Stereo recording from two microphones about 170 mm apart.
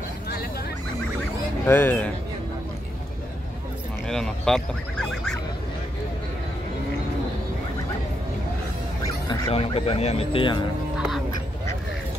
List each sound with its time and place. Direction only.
1.7 s speech: 10° left (ahead or behind)
4.1 s a sound: 5° left (ahead or behind)
9.3 s speech: 35° left (ahead or behind)